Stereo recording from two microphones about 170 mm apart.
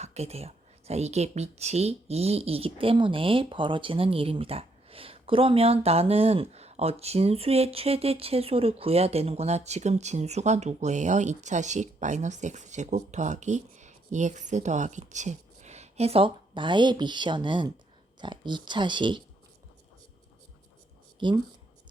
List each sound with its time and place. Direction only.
0.0 s speech: 40° right (ahead or behind)